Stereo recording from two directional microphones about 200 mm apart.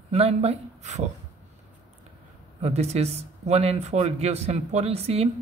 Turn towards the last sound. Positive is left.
turn(degrees=-30)  # may be behind; listen again after turning